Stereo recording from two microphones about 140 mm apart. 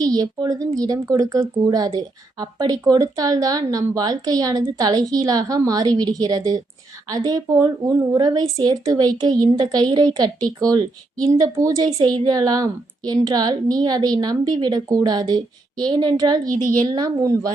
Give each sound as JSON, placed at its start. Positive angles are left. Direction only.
{"t": 0.0, "sound": "speech", "side_deg": -25}